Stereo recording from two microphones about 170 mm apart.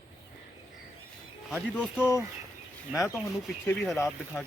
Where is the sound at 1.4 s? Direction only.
5° right (ahead or behind).